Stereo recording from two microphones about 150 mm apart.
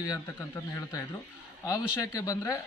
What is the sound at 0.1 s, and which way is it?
Speech, 20° left (ahead or behind).